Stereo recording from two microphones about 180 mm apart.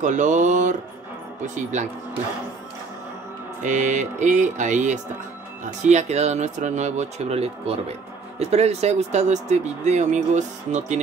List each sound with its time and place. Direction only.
0.0 s music: 45° right (ahead or behind)
1.4 s speech: 40° right (ahead or behind)
3.6 s music: 45° right (ahead or behind)
5.9 s speech: 40° right (ahead or behind)